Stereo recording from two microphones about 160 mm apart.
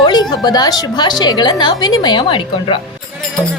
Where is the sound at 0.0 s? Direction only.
25° left (ahead or behind).